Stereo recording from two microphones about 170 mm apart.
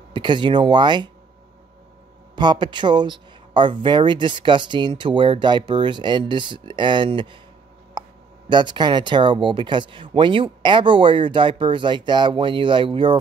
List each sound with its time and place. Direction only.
0.1 s speech: 25° right (ahead or behind)
2.3 s speech: 25° right (ahead or behind)
8.0 s a sound: 25° right (ahead or behind)
8.5 s speech: 25° right (ahead or behind)